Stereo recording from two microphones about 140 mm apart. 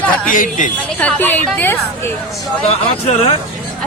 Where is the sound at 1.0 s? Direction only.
10° left (ahead or behind).